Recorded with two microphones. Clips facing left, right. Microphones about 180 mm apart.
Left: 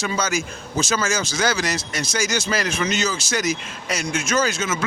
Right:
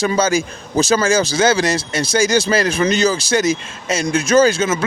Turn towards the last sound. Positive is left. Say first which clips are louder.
# right 9 dB
turn(degrees=-30)  # may be behind; listen again after turning